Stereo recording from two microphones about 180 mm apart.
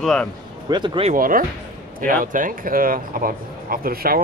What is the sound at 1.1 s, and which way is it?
Speech, 50° right (ahead or behind).